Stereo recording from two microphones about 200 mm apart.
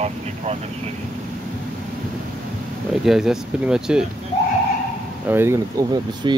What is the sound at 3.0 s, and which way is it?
Speech, centre (ahead or behind).